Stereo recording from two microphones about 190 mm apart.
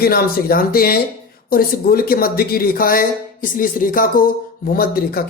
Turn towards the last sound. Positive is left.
turn(degrees=50)  # may be behind; listen again after turning